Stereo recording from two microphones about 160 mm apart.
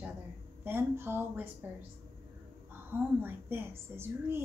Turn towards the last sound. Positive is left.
turn(degrees=-15)  # may be behind; listen again after turning